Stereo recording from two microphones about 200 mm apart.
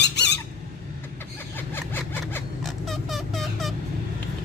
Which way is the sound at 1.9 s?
5° left (ahead or behind).